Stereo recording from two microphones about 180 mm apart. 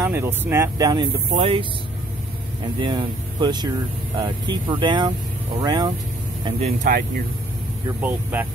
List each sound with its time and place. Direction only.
0.0 s speech: 10° right (ahead or behind)
1.3 s speech: 30° right (ahead or behind)
2.8 s speech: 25° right (ahead or behind)
6.8 s speech: 45° right (ahead or behind)
8.0 s speech: 10° right (ahead or behind)